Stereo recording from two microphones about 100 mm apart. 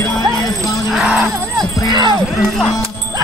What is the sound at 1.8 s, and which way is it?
Music, 45° right (ahead or behind).